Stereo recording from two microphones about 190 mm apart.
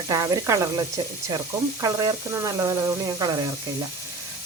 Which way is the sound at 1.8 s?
20° right (ahead or behind).